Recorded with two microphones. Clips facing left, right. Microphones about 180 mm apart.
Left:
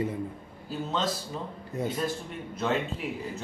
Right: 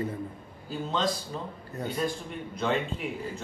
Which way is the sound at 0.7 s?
Centre (ahead or behind).